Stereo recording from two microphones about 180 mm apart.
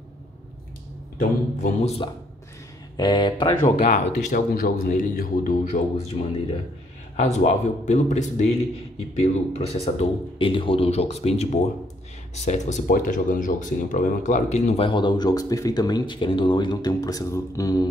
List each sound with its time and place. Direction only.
1.6 s speech: 40° left (ahead or behind)
3.0 s speech: 25° left (ahead or behind)
3.8 s speech: 50° left (ahead or behind)
5.9 s speech: 35° left (ahead or behind)
14.9 s speech: 25° left (ahead or behind)